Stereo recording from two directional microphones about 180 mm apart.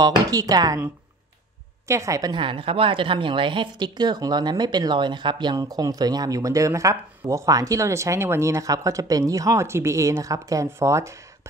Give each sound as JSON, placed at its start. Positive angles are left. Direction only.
{"t": 0.3, "sound": "a woman's voice", "side_deg": -20}
{"t": 1.9, "sound": "a woman's voice", "side_deg": -15}